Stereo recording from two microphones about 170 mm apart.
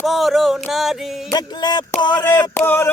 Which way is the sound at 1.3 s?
25° left (ahead or behind).